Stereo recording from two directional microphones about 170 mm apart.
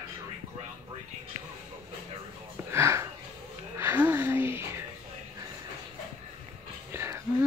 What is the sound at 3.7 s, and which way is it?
Music, 15° right (ahead or behind).